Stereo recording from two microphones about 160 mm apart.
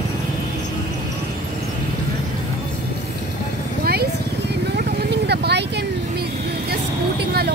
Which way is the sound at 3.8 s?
80° right.